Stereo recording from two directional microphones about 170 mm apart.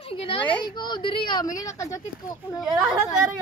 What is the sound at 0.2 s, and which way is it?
A woman's voice, 30° left (ahead or behind).